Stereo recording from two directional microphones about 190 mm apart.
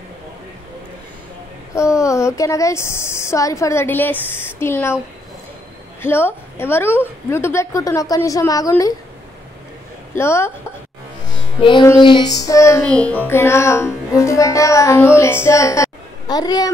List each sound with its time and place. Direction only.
1.8 s speech: 15° left (ahead or behind)
6.0 s a woman's voice: 10° left (ahead or behind)
10.1 s speech: 15° left (ahead or behind)
11.2 s music: 25° left (ahead or behind)
12.0 s speech: 25° left (ahead or behind)